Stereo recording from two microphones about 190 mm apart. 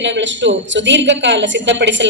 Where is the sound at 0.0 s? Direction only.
70° right (ahead or behind).